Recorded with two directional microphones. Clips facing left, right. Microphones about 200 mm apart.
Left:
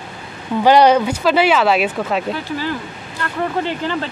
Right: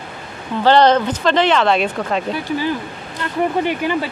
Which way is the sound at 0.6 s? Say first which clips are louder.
Left 1 dB; 10° left (ahead or behind).